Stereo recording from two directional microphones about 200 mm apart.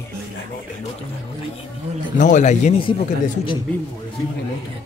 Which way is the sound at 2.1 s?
40° left (ahead or behind).